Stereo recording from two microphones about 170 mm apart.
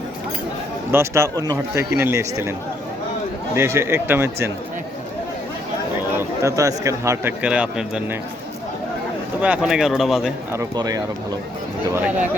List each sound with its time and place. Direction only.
0.9 s a man's voice: 15° right (ahead or behind)
3.5 s a man's voice: 15° right (ahead or behind)
6.1 s a man's voice: 20° right (ahead or behind)
9.4 s speech: 5° right (ahead or behind)
10.5 s speech: 20° right (ahead or behind)
11.9 s a man's voice: 10° right (ahead or behind)